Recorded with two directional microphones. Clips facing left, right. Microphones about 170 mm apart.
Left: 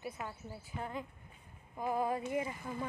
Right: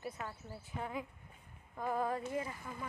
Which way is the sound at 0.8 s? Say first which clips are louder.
Even; 5° right (ahead or behind).